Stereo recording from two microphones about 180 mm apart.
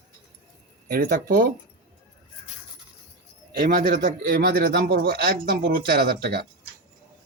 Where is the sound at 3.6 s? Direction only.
55° right (ahead or behind).